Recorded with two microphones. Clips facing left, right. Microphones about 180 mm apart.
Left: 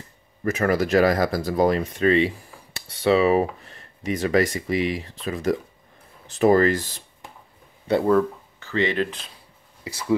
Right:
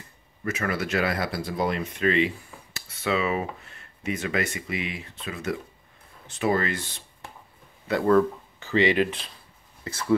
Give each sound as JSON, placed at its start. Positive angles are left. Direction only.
{"t": 0.4, "sound": "speech", "side_deg": 40}
{"t": 8.5, "sound": "speech", "side_deg": -15}
{"t": 9.8, "sound": "speech", "side_deg": 10}